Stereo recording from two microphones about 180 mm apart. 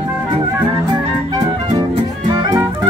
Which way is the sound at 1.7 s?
25° right (ahead or behind).